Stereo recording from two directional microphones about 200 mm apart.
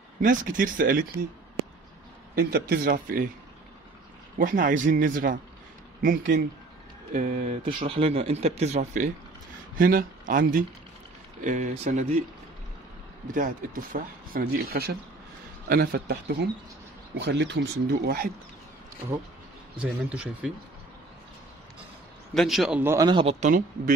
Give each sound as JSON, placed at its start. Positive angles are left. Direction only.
{"t": 0.2, "sound": "speech", "side_deg": -40}
{"t": 2.3, "sound": "speech", "side_deg": -50}
{"t": 4.4, "sound": "speech", "side_deg": -40}
{"t": 7.6, "sound": "speech", "side_deg": -25}
{"t": 13.3, "sound": "speech", "side_deg": -40}
{"t": 19.8, "sound": "speech", "side_deg": -5}
{"t": 22.3, "sound": "speech", "side_deg": 0}
{"t": 23.0, "sound": "a man's voice", "side_deg": -25}